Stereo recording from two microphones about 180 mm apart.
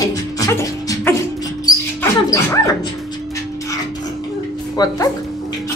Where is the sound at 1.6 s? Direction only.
20° left (ahead or behind).